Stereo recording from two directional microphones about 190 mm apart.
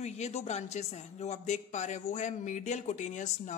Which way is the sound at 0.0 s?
35° left (ahead or behind).